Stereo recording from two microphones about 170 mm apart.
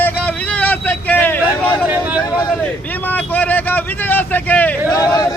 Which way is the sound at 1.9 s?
10° right (ahead or behind).